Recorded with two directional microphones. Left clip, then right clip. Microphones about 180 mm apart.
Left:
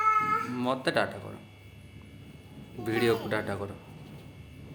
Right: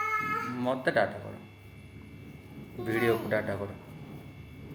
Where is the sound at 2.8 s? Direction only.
45° left (ahead or behind).